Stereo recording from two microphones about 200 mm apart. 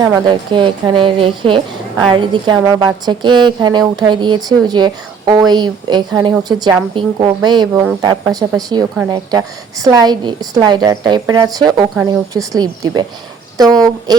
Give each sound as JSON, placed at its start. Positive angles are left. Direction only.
{"t": 0.0, "sound": "a woman's voice", "side_deg": -20}